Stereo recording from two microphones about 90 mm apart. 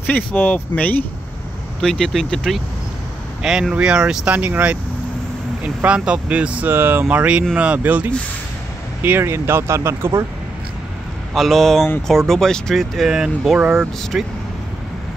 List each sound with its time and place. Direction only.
0.0 s speech: 20° left (ahead or behind)
1.8 s speech: 5° left (ahead or behind)
3.4 s speech: 5° right (ahead or behind); by 10.2 s 30° right (ahead or behind)
11.3 s speech: centre (ahead or behind)